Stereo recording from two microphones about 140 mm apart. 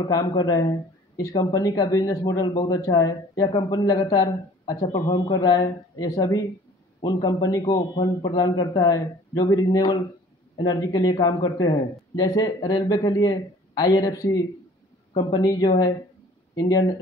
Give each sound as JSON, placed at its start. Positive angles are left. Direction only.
{"t": 0.0, "sound": "speech", "side_deg": 30}